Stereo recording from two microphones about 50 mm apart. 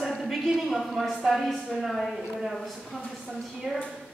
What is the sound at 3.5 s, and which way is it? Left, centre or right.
Speech, centre.